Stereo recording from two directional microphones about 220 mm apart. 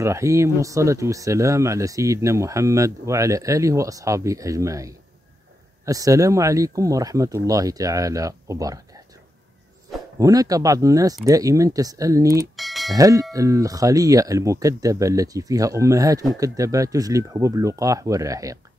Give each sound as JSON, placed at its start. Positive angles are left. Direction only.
{"t": 0.0, "sound": "speech", "side_deg": -15}
{"t": 10.1, "sound": "speech", "side_deg": -15}
{"t": 12.5, "sound": "a sound", "side_deg": 0}
{"t": 12.9, "sound": "speech", "side_deg": -15}